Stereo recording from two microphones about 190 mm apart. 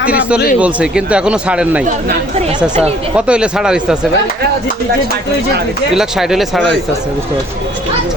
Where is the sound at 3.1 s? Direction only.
5° right (ahead or behind).